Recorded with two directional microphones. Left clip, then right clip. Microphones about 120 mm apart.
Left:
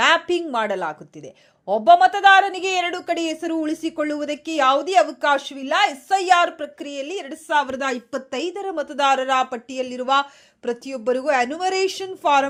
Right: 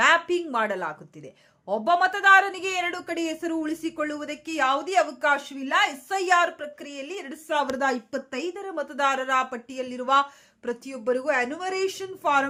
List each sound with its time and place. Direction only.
0.0 s a woman's voice: 25° left (ahead or behind)